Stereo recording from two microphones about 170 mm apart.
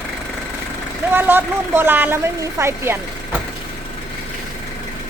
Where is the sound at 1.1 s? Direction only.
10° right (ahead or behind).